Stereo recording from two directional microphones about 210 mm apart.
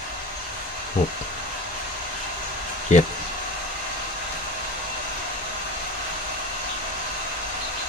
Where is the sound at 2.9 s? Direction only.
35° left (ahead or behind).